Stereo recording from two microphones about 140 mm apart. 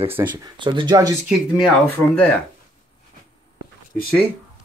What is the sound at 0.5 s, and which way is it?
Speech, 35° right (ahead or behind).